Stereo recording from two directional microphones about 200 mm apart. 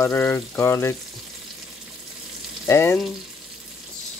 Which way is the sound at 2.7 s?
15° left (ahead or behind).